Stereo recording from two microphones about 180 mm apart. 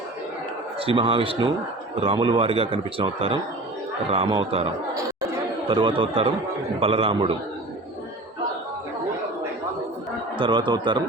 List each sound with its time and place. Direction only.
0.8 s a man's voice: 30° right (ahead or behind)
10.3 s a man's voice: 30° right (ahead or behind)